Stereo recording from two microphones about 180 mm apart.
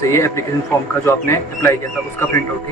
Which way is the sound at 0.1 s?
15° left (ahead or behind).